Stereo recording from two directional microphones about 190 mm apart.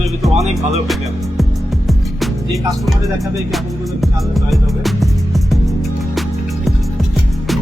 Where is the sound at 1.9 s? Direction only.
Centre (ahead or behind).